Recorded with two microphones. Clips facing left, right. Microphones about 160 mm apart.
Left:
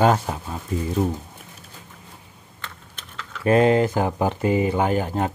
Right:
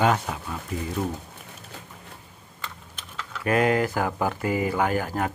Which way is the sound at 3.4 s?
25° left (ahead or behind).